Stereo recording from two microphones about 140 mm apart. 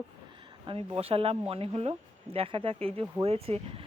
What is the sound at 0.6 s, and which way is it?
Speech, 40° right (ahead or behind).